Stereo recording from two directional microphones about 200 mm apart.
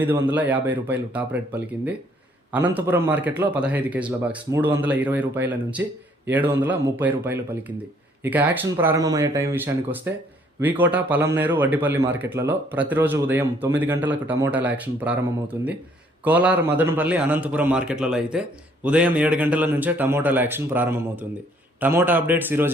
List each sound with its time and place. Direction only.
0.0 s a man's voice: 10° right (ahead or behind)